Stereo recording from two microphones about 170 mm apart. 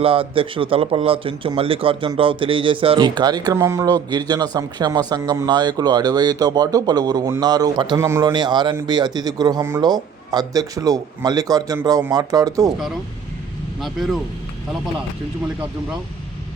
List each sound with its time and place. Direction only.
0.0 s a man's voice: 30° right (ahead or behind); by 8.3 s 15° right (ahead or behind)
8.3 s a man's voice: 25° right (ahead or behind)
13.8 s speech: centre (ahead or behind)